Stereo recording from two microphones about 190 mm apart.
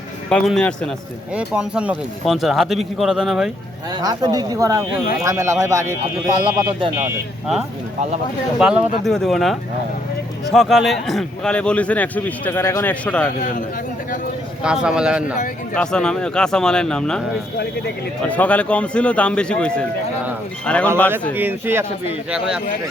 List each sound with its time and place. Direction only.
0.3 s a man's voice: 5° left (ahead or behind)
3.9 s speech: 20° right (ahead or behind)
7.0 s a man's voice: centre (ahead or behind)
14.6 s a man's voice: 5° right (ahead or behind)
18.3 s a man's voice: 10° left (ahead or behind)
21.3 s a man's voice: 10° right (ahead or behind)